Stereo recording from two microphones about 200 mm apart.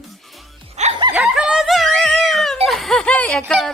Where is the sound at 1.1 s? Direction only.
5° right (ahead or behind).